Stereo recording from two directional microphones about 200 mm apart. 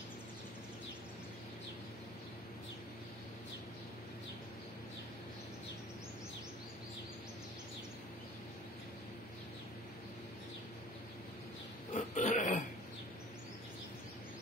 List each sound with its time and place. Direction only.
11.9 s pig: 40° left (ahead or behind)